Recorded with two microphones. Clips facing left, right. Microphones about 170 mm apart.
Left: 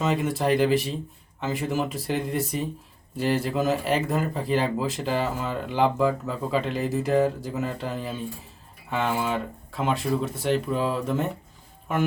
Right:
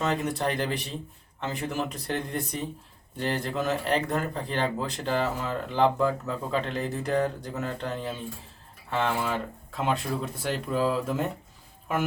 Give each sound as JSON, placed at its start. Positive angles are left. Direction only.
{"t": 0.0, "sound": "speech", "side_deg": 0}